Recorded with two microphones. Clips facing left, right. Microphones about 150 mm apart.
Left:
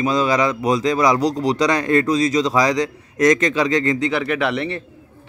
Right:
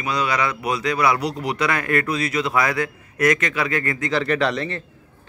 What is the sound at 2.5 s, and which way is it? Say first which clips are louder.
Speech: left 4 dB; 20° left (ahead or behind).